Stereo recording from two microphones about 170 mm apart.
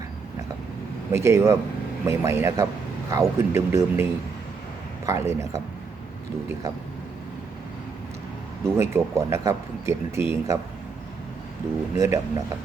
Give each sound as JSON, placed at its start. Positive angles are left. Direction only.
{"t": 1.1, "sound": "a man's voice", "side_deg": -15}
{"t": 8.6, "sound": "a man's voice", "side_deg": -15}
{"t": 11.9, "sound": "a man's voice", "side_deg": -15}